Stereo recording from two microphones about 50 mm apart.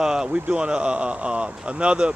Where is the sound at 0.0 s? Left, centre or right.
Centre.